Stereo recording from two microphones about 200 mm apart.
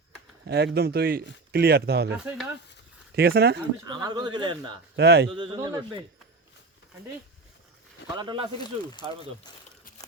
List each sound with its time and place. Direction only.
0.4 s speech: 55° right (ahead or behind)
2.2 s speech: 10° right (ahead or behind)
3.2 s speech: 55° right (ahead or behind)
3.8 s speech: 20° right (ahead or behind)
4.9 s speech: 60° right (ahead or behind)
5.3 s speech: 25° right (ahead or behind)
8.1 s speech: 20° right (ahead or behind)
8.5 s speech: 20° left (ahead or behind)